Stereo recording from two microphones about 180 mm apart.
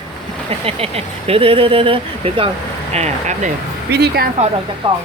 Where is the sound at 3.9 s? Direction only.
65° right (ahead or behind).